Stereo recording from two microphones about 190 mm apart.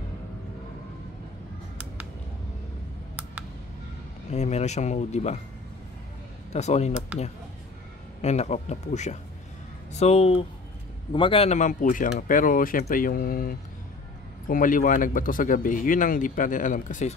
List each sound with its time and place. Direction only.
4.3 s speech: 35° left (ahead or behind)
6.5 s speech: 35° left (ahead or behind)
8.2 s speech: 35° left (ahead or behind)